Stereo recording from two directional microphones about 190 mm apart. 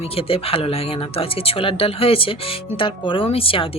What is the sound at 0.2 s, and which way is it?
Speech, 30° left (ahead or behind).